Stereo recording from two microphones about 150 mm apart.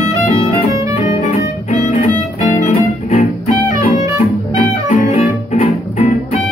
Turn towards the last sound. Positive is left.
turn(degrees=55)  # may be behind; listen again after turning